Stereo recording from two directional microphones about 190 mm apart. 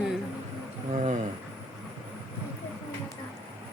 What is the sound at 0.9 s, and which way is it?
Speech, 40° right (ahead or behind).